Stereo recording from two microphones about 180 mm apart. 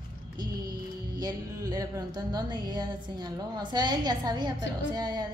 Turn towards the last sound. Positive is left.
turn(degrees=-20)  # may be behind; listen again after turning